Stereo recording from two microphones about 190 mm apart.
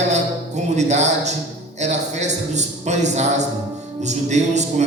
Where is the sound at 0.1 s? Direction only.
35° right (ahead or behind).